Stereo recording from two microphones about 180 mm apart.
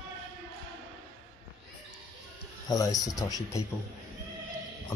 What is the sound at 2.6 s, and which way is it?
Speech, 20° left (ahead or behind).